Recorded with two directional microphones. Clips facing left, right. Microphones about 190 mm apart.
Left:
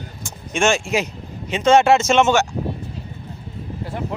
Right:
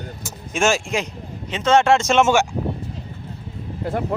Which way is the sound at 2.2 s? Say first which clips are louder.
Even; 10° right (ahead or behind).